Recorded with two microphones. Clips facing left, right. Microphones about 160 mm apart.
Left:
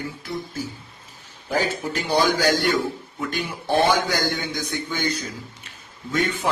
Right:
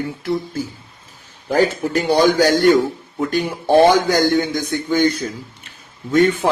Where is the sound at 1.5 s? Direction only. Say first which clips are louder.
Right 7 dB; 50° right (ahead or behind).